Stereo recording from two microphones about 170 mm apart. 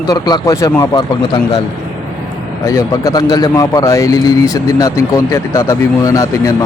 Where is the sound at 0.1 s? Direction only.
25° left (ahead or behind).